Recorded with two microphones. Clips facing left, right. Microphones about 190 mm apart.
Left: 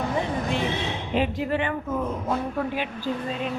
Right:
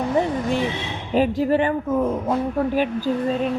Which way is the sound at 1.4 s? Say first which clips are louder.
Right 7 dB; 40° right (ahead or behind).